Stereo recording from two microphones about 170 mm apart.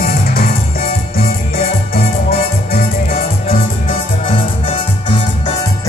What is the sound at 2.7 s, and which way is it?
Music, 60° left (ahead or behind).